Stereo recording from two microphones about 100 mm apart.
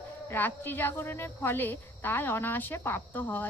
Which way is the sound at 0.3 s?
20° left (ahead or behind).